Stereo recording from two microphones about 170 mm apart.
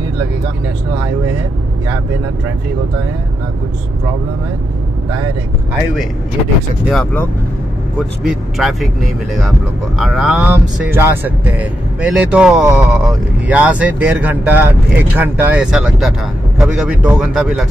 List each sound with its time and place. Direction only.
8.2 s speech: centre (ahead or behind)